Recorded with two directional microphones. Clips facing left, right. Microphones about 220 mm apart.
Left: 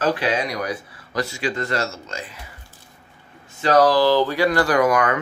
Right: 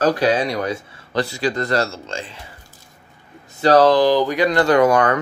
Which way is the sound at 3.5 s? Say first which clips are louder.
Right 3 dB; 35° right (ahead or behind).